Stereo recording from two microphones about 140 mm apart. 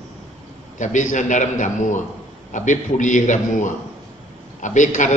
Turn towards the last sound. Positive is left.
turn(degrees=65)  # may be behind; listen again after turning